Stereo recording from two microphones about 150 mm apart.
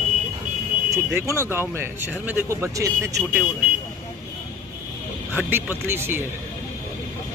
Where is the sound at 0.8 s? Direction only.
20° right (ahead or behind).